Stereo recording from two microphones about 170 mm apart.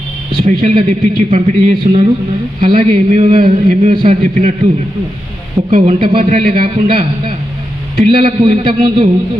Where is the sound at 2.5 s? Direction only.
40° right (ahead or behind).